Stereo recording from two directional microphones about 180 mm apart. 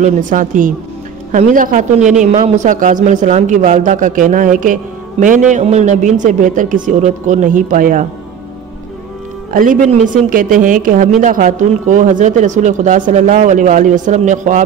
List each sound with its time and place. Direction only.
0.0 s speech: 45° right (ahead or behind)
9.5 s speech: 50° right (ahead or behind)